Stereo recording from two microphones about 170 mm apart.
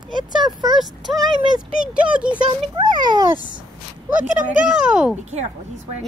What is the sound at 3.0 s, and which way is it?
Speech, 25° right (ahead or behind).